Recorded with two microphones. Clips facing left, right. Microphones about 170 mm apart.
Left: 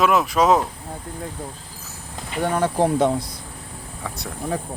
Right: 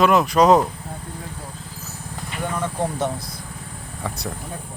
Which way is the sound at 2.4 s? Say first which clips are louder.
Left 6 dB; 75° left (ahead or behind).